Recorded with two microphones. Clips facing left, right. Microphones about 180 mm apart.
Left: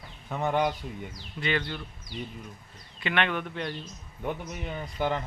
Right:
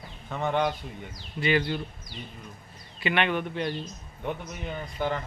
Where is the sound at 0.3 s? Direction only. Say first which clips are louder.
Even; 10° left (ahead or behind).